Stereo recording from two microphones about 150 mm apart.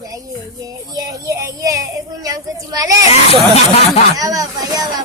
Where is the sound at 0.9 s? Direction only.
25° right (ahead or behind).